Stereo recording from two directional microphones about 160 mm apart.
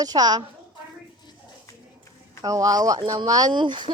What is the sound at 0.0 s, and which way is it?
Speech, 25° right (ahead or behind).